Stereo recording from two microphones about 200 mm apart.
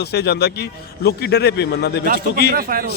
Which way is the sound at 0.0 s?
55° left (ahead or behind).